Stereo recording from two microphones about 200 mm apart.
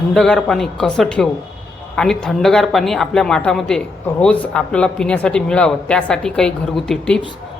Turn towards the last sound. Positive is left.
turn(degrees=5)  # may be behind; listen again after turning